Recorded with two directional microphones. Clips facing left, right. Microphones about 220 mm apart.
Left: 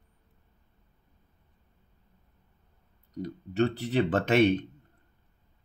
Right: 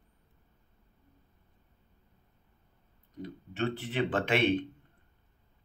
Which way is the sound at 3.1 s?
40° left (ahead or behind).